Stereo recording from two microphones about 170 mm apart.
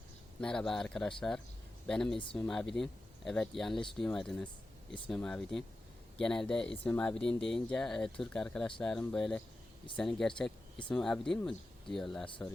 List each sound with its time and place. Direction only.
0.4 s speech: 5° left (ahead or behind)